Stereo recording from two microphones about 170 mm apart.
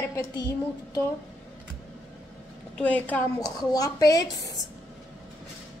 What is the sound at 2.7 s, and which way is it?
Speech, 10° left (ahead or behind).